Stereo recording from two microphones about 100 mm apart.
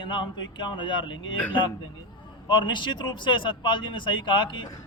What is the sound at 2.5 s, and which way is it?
A man's voice, 50° left (ahead or behind).